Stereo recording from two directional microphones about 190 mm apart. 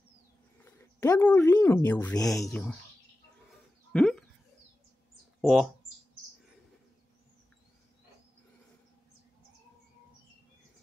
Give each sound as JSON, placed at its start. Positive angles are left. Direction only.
{"t": 0.6, "sound": "speech", "side_deg": 15}
{"t": 3.9, "sound": "bird", "side_deg": 5}
{"t": 5.4, "sound": "speech", "side_deg": 0}